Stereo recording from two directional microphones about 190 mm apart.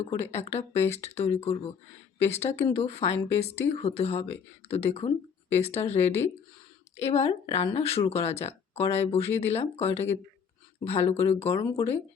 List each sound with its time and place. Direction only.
0.2 s speech: 35° left (ahead or behind)